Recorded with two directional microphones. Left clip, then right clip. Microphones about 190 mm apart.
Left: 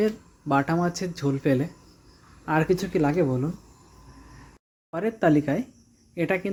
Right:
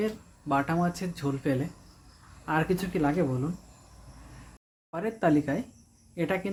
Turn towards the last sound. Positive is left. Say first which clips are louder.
# left 4 dB
turn(degrees=15)  # may be behind; listen again after turning